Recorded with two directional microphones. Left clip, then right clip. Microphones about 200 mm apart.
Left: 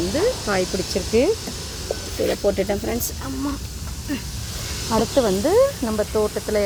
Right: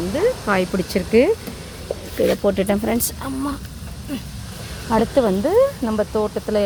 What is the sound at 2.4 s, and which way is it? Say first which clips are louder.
Speech: right 2 dB; 15° right (ahead or behind).